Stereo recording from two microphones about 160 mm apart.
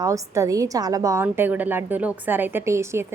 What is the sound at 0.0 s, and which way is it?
A woman's voice, 20° right (ahead or behind).